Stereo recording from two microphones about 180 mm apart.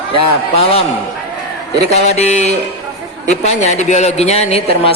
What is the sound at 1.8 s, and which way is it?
Speech, 40° left (ahead or behind).